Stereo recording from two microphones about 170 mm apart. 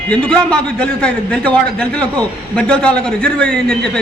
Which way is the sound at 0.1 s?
5° left (ahead or behind).